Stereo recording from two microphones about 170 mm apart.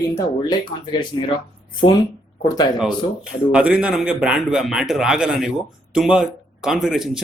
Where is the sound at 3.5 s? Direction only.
5° right (ahead or behind).